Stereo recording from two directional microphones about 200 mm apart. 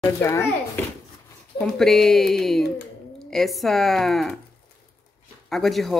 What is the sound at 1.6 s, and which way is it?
A woman's voice, centre (ahead or behind).